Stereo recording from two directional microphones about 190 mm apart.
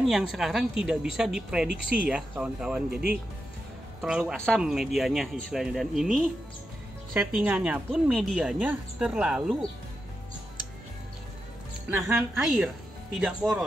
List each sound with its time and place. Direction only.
0.0 s speech: centre (ahead or behind)
4.0 s speech: 5° right (ahead or behind)
7.2 s speech: 5° right (ahead or behind)
11.9 s speech: 10° right (ahead or behind)